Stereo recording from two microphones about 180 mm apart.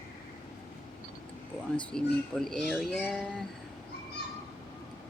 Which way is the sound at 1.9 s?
5° left (ahead or behind).